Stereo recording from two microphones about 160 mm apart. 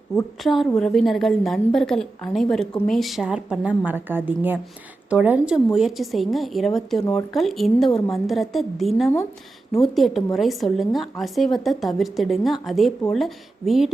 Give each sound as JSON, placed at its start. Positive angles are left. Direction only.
{"t": 0.4, "sound": "a woman's voice", "side_deg": 0}
{"t": 7.0, "sound": "speech", "side_deg": 20}
{"t": 7.3, "sound": "a woman's voice", "side_deg": 0}